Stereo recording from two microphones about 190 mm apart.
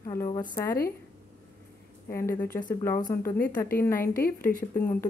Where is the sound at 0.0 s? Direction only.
15° left (ahead or behind).